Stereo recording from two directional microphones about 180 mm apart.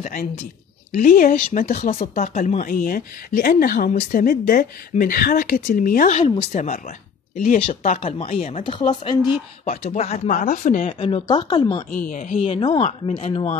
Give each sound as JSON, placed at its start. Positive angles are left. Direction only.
{"t": 0.0, "sound": "speech", "side_deg": 55}
{"t": 8.5, "sound": "speech", "side_deg": 30}
{"t": 10.3, "sound": "speech", "side_deg": 45}
{"t": 11.0, "sound": "speech", "side_deg": 30}
{"t": 12.0, "sound": "speech", "side_deg": 45}
{"t": 12.4, "sound": "speech", "side_deg": 30}